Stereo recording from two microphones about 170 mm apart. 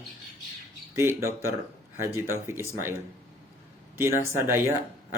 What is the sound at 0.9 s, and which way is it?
Speech, 15° right (ahead or behind).